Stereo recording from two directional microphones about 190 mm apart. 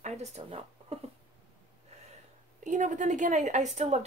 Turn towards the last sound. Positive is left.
turn(degrees=-35)  # may be behind; listen again after turning